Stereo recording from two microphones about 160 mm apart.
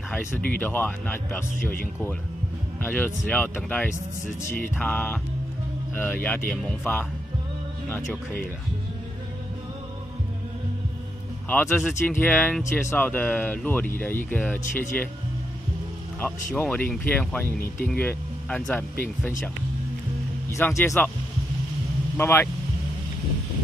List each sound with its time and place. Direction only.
0.6 s speech: 10° left (ahead or behind)
2.8 s speech: 10° left (ahead or behind)
11.4 s speech: 10° left (ahead or behind)
16.6 s speech: 5° left (ahead or behind)
20.4 s speech: 15° left (ahead or behind)
22.1 s speech: 15° left (ahead or behind)